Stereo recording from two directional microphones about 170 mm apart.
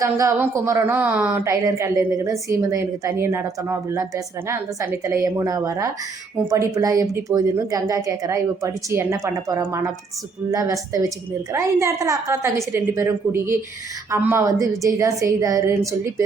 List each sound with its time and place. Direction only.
0.0 s a woman's voice: 20° right (ahead or behind)